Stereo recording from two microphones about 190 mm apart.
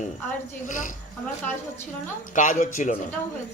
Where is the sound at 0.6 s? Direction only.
40° left (ahead or behind).